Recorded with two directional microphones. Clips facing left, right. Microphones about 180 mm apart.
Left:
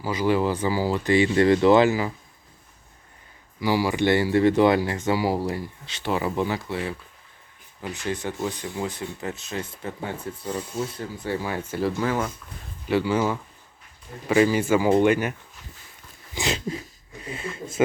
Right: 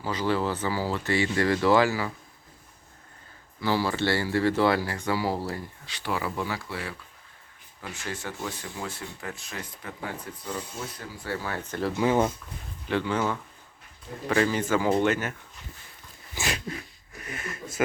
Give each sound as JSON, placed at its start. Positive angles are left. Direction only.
{"t": 0.0, "sound": "speech", "side_deg": 10}
{"t": 3.6, "sound": "speech", "side_deg": 15}
{"t": 11.9, "sound": "speech", "side_deg": -20}
{"t": 12.9, "sound": "speech", "side_deg": 10}